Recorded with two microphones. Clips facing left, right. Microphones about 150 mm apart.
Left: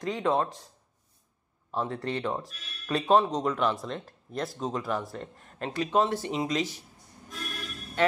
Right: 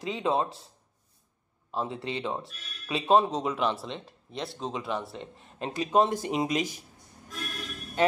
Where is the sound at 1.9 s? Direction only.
5° right (ahead or behind).